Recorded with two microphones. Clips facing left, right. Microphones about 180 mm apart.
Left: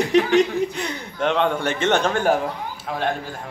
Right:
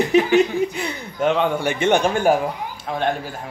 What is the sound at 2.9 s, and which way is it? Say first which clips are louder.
Speech: right 2 dB; centre (ahead or behind).